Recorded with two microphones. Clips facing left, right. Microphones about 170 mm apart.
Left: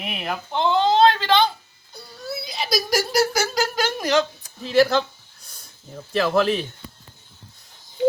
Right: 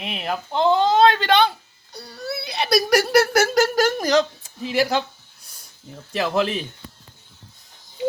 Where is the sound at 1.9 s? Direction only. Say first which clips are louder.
Right 2 dB; 70° right (ahead or behind); by 4.2 s 35° right (ahead or behind).